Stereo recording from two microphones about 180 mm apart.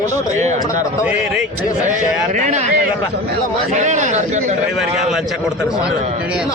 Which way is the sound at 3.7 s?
40° right (ahead or behind).